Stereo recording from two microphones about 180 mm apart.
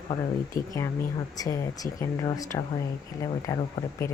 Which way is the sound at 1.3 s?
20° left (ahead or behind).